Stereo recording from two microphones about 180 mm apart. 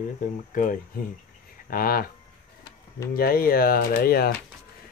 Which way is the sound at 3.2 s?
55° left (ahead or behind).